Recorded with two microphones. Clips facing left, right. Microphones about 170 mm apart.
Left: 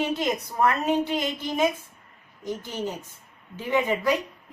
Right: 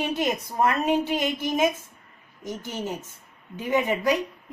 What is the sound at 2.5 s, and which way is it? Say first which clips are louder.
A woman's voice: left 1 dB; 20° right (ahead or behind).